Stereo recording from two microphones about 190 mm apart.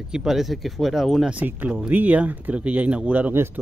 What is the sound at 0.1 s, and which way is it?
Speech, 5° right (ahead or behind).